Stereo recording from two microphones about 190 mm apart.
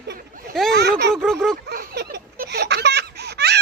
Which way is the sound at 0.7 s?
60° right (ahead or behind).